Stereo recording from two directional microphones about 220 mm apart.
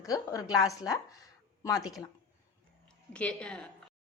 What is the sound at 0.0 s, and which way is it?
A woman's voice, 15° left (ahead or behind).